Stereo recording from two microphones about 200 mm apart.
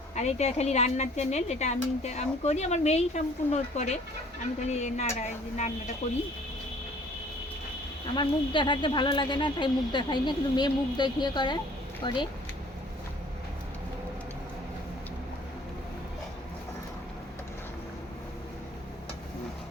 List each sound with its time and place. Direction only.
0.2 s speech: 35° left (ahead or behind)
8.1 s speech: 25° left (ahead or behind)